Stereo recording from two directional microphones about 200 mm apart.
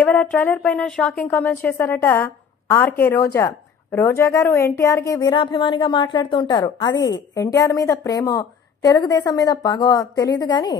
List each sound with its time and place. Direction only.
0.0 s a woman's voice: 5° left (ahead or behind)